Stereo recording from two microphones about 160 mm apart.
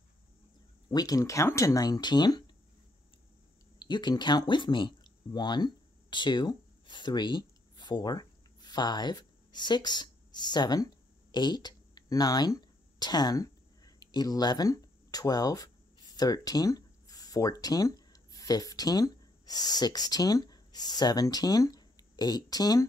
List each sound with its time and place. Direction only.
0.8 s speech: 25° left (ahead or behind)
3.8 s speech: 30° left (ahead or behind)